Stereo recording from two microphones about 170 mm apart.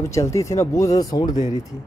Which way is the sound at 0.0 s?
20° left (ahead or behind).